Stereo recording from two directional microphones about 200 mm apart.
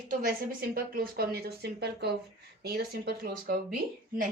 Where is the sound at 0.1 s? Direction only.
45° right (ahead or behind).